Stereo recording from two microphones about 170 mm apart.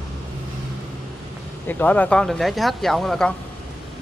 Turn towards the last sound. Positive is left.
turn(degrees=0)  # may be behind; listen again after turning